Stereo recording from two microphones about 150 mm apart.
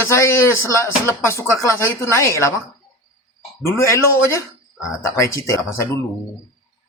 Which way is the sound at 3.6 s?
20° left (ahead or behind).